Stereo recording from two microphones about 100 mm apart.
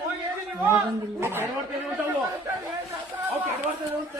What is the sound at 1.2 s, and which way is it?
Speech, 20° right (ahead or behind).